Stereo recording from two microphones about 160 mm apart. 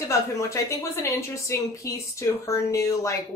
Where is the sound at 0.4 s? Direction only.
20° left (ahead or behind).